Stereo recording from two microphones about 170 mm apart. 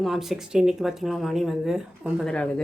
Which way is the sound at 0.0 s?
Centre (ahead or behind).